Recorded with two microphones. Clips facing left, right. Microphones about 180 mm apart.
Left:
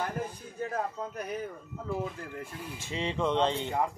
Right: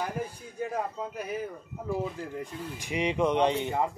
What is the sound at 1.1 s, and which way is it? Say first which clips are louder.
Speech: right 2 dB; 5° right (ahead or behind).